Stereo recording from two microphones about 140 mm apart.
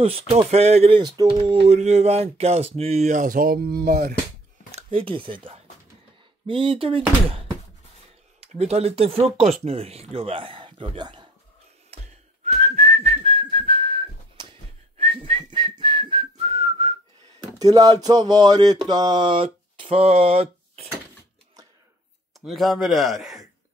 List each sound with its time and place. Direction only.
0.0 s speech: 40° right (ahead or behind)
1.0 s a sound: 35° right (ahead or behind)
1.8 s speech: 50° right (ahead or behind); by 4.1 s 90° right
4.7 s speech: 40° right (ahead or behind)
6.4 s a sound: 40° right (ahead or behind)
8.4 s speech: 50° right (ahead or behind); by 11.2 s 35° right (ahead or behind)
12.7 s whistling: 50° right (ahead or behind)
17.6 s a sound: 25° right (ahead or behind); by 20.9 s 45° right (ahead or behind)
22.4 s speech: centre (ahead or behind)